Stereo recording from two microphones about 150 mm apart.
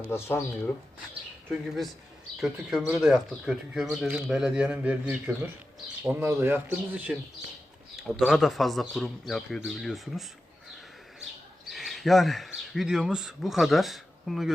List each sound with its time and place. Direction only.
0.1 s speech: 15° left (ahead or behind)
1.5 s speech: centre (ahead or behind)
11.7 s speech: centre (ahead or behind)